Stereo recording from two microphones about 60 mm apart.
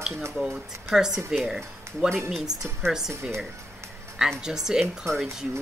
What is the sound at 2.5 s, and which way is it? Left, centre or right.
Speech, right.